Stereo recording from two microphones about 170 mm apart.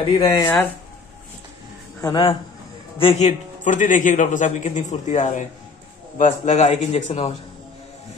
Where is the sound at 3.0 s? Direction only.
35° left (ahead or behind).